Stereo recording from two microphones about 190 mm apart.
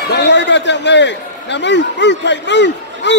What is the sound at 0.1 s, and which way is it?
A man's voice, 65° left (ahead or behind).